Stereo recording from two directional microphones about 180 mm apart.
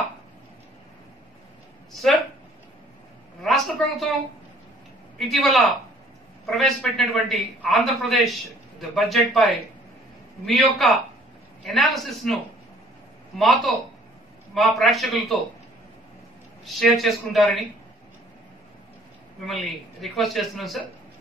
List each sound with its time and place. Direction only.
2.0 s a sound: centre (ahead or behind)
3.4 s a sound: centre (ahead or behind)
5.3 s a man's voice: centre (ahead or behind)
13.4 s a man's voice: centre (ahead or behind)
16.6 s a man's voice: centre (ahead or behind)
19.4 s a man's voice: centre (ahead or behind)